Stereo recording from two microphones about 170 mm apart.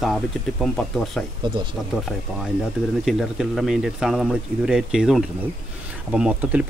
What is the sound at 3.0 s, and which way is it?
A man's voice, centre (ahead or behind).